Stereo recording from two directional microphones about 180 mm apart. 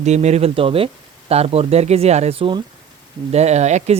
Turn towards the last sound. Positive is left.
turn(degrees=-40)  # may be behind; listen again after turning